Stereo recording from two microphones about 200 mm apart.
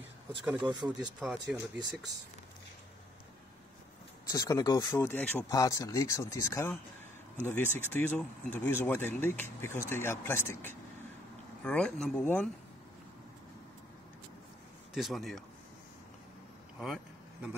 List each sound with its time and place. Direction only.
0.6 s speech: 20° right (ahead or behind)
1.2 s speech: 5° right (ahead or behind)
4.3 s speech: 15° left (ahead or behind)
15.0 s speech: centre (ahead or behind)
16.8 s vehicle: 5° right (ahead or behind)